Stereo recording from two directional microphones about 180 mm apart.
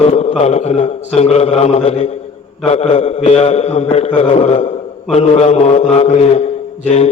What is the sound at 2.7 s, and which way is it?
Mantra, 35° left (ahead or behind).